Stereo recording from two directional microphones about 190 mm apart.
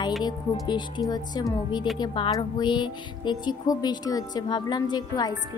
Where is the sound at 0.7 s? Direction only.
25° left (ahead or behind).